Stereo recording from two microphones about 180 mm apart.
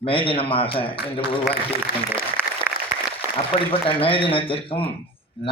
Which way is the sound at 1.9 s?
55° left (ahead or behind).